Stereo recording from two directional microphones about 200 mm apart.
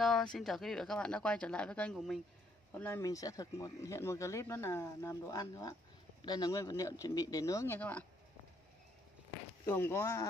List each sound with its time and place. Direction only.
0.0 s speech: centre (ahead or behind)
2.7 s speech: 10° left (ahead or behind)
9.7 s speech: 10° left (ahead or behind)